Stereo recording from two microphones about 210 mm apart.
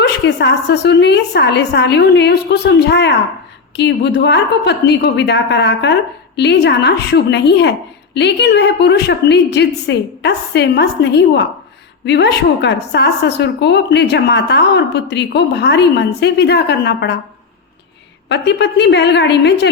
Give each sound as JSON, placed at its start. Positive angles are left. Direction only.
{"t": 0.1, "sound": "a woman's voice", "side_deg": 55}
{"t": 18.3, "sound": "a woman's voice", "side_deg": 55}